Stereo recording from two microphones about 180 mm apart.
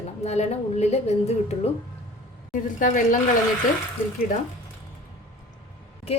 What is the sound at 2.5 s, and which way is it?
Speech, 45° left (ahead or behind).